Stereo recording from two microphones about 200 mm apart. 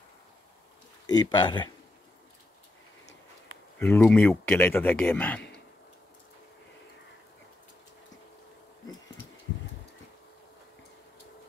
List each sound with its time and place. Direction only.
1.0 s speech: 20° left (ahead or behind)
3.8 s speech: 10° left (ahead or behind)